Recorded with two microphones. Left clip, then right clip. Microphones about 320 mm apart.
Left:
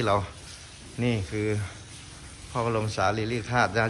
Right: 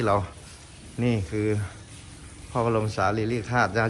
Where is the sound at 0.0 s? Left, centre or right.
Centre.